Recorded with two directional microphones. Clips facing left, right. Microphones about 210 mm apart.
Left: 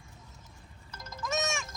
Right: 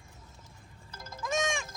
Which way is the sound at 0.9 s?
30° right (ahead or behind).